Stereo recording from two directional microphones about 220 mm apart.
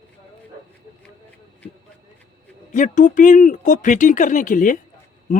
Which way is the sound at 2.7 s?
35° left (ahead or behind).